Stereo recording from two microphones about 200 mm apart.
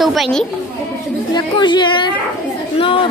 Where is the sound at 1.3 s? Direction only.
20° left (ahead or behind).